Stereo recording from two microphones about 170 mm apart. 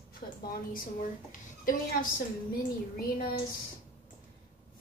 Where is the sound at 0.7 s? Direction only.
55° left (ahead or behind).